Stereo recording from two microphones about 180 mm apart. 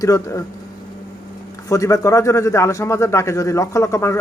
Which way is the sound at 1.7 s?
20° left (ahead or behind).